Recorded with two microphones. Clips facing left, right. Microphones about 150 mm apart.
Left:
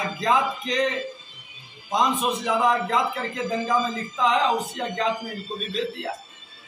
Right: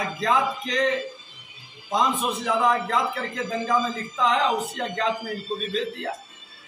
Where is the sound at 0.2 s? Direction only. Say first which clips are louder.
Left 1 dB; centre (ahead or behind).